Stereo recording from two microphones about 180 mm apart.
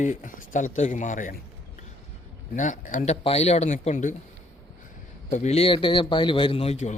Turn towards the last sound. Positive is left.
turn(degrees=35)  # may be behind; listen again after turning